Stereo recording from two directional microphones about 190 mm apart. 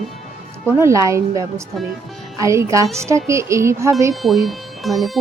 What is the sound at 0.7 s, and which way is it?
Speech, 15° right (ahead or behind).